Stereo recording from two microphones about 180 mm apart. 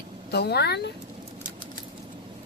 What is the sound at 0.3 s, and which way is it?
Speech, 65° left (ahead or behind).